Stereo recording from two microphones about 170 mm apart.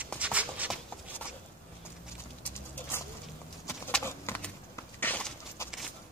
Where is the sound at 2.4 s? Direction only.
10° left (ahead or behind).